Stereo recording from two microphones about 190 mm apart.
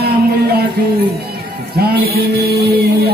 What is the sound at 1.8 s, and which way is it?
Music, 55° right (ahead or behind).